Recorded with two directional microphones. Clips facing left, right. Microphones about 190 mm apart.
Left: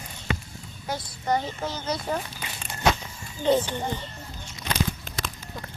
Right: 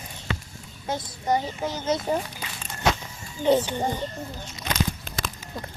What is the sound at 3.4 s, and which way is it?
Speech, 10° right (ahead or behind).